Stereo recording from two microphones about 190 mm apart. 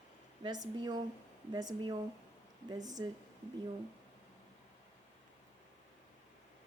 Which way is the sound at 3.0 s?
25° right (ahead or behind).